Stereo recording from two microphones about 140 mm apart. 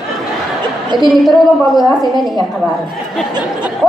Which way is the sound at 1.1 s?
Centre (ahead or behind).